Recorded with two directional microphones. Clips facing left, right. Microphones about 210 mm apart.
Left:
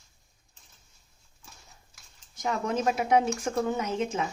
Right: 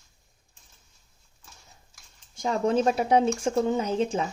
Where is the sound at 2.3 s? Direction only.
30° right (ahead or behind).